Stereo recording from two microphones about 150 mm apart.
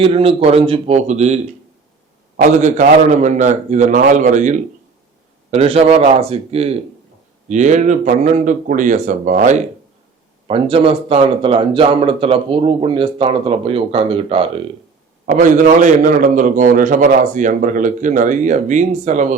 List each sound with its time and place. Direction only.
0.0 s speech: 40° right (ahead or behind)
2.4 s a man's voice: 50° right (ahead or behind)
5.5 s a man's voice: 45° right (ahead or behind)
7.4 s a man's voice: 55° right (ahead or behind)
10.4 s speech: 40° right (ahead or behind)
15.4 s a man's voice: 60° right (ahead or behind)